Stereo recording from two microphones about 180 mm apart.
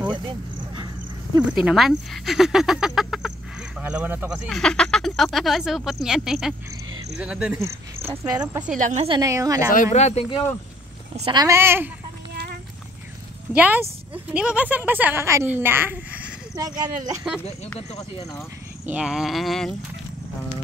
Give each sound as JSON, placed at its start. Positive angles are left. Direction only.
{"t": 0.0, "sound": "a sound", "side_deg": -25}
{"t": 1.5, "sound": "speech", "side_deg": -5}
{"t": 4.5, "sound": "speech", "side_deg": 5}
{"t": 7.5, "sound": "speech", "side_deg": -15}
{"t": 8.6, "sound": "a woman's voice", "side_deg": -45}
{"t": 9.0, "sound": "a woman's voice", "side_deg": -25}
{"t": 9.9, "sound": "speech", "side_deg": 35}
{"t": 11.2, "sound": "speech", "side_deg": -20}
{"t": 13.5, "sound": "a woman's voice", "side_deg": -10}
{"t": 17.9, "sound": "speech", "side_deg": 20}
{"t": 18.9, "sound": "speech", "side_deg": -5}